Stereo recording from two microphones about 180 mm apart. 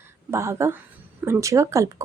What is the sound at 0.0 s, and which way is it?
A woman's voice, 15° right (ahead or behind).